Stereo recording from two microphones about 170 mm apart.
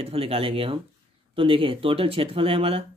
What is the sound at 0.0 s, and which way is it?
Speech, 35° right (ahead or behind).